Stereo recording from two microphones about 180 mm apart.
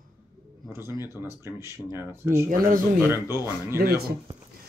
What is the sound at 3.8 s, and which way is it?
Speech, 60° right (ahead or behind).